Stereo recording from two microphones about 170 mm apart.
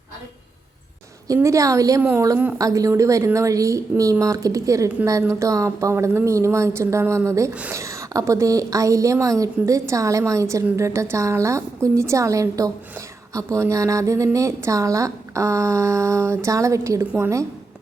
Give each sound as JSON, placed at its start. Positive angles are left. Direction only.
{"t": 1.3, "sound": "a woman's voice", "side_deg": -20}